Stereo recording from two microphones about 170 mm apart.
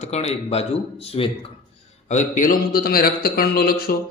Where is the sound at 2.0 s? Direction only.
45° left (ahead or behind).